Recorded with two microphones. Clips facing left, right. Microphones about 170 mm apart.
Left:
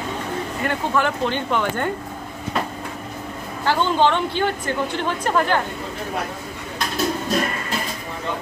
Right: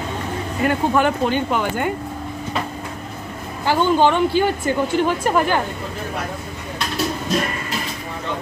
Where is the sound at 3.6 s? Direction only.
10° right (ahead or behind).